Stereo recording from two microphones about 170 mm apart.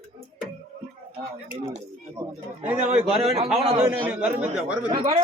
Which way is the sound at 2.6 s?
10° right (ahead or behind).